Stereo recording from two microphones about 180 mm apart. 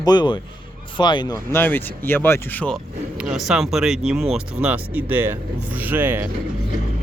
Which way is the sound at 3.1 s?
5° right (ahead or behind).